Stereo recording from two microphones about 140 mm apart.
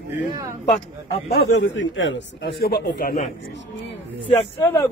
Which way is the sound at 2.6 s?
90° left.